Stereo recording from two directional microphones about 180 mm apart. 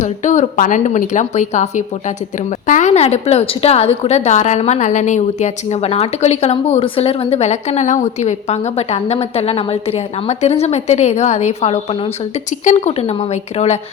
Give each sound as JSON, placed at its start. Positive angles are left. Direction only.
{"t": 0.0, "sound": "a woman's voice", "side_deg": 40}